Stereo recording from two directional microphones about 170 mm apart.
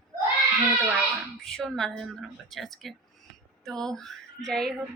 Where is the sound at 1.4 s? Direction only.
Centre (ahead or behind).